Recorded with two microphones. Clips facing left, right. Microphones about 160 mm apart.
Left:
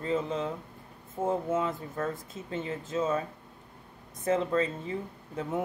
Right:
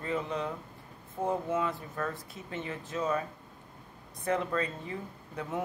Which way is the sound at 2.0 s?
25° left (ahead or behind).